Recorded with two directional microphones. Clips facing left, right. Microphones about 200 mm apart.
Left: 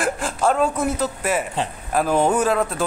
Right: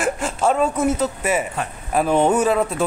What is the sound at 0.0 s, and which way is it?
Speech, 5° right (ahead or behind).